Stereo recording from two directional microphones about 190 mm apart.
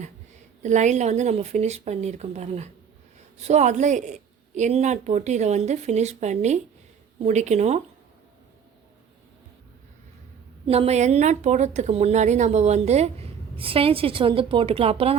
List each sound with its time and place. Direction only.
0.6 s a woman's voice: 40° right (ahead or behind)
10.7 s a woman's voice: 35° right (ahead or behind)